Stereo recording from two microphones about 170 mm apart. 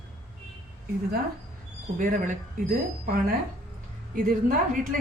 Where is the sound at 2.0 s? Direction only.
50° right (ahead or behind).